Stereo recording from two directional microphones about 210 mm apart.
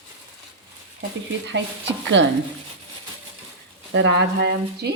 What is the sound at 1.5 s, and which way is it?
Speech, 60° right (ahead or behind).